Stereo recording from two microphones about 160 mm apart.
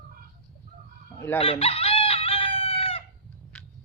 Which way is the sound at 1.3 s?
35° left (ahead or behind).